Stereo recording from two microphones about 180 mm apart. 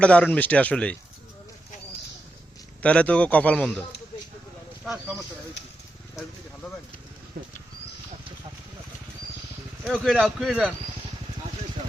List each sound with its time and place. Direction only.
0.0 s a man's voice: 5° left (ahead or behind)
2.8 s a man's voice: 5° left (ahead or behind)
7.3 s wild animals: 60° right (ahead or behind)
9.8 s speech: centre (ahead or behind)